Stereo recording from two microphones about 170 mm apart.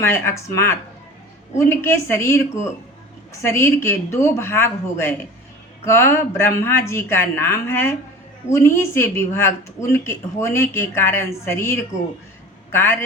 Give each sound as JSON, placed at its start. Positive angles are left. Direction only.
{"t": 0.0, "sound": "a woman's voice", "side_deg": 15}